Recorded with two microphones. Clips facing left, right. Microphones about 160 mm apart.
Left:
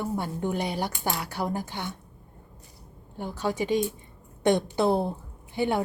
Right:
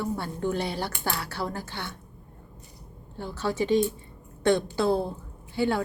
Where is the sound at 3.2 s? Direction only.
15° left (ahead or behind).